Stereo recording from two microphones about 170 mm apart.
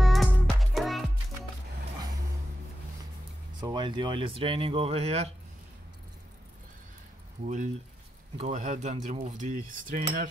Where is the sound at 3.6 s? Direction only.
25° right (ahead or behind).